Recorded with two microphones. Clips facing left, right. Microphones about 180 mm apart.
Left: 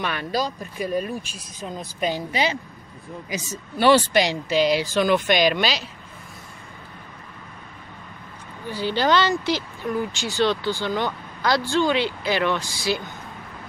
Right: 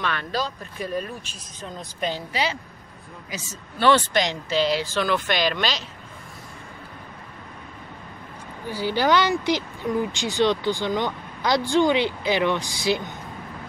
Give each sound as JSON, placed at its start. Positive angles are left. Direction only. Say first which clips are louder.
{"t": 0.0, "sound": "speech", "louder": "left 2 dB", "side_deg": 10}
{"t": 3.7, "sound": "speech", "louder": "left 2 dB", "side_deg": 10}
{"t": 8.6, "sound": "speech", "louder": "even", "side_deg": -10}